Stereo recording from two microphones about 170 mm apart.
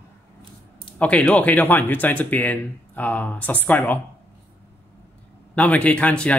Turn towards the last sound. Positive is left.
turn(degrees=5)  # may be behind; listen again after turning